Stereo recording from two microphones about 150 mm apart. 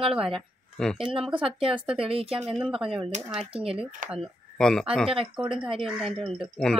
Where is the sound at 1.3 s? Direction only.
35° right (ahead or behind).